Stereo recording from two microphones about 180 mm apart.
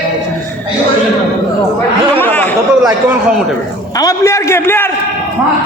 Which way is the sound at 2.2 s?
10° left (ahead or behind).